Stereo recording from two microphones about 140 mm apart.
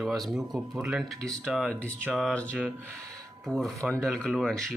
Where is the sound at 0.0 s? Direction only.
Centre (ahead or behind).